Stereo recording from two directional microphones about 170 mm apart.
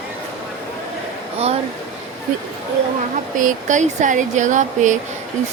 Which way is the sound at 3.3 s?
50° right (ahead or behind).